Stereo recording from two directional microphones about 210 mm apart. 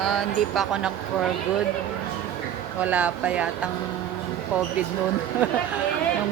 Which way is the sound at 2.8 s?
5° right (ahead or behind).